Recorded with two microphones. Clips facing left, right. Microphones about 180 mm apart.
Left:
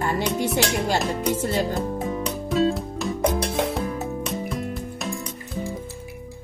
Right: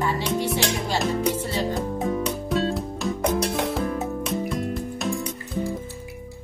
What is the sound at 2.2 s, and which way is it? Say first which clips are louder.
Music: left 2 dB; centre (ahead or behind).